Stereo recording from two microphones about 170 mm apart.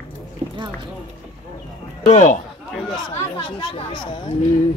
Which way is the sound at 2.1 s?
45° left (ahead or behind).